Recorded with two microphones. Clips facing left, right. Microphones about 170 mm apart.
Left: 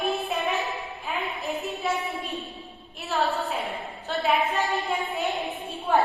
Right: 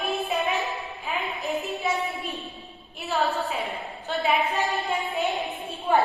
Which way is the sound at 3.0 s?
Centre (ahead or behind).